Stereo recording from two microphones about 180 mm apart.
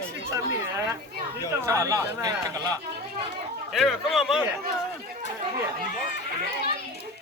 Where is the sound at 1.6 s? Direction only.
15° right (ahead or behind).